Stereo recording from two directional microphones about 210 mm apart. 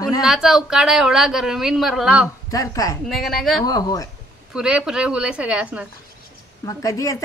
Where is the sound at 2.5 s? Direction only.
15° left (ahead or behind).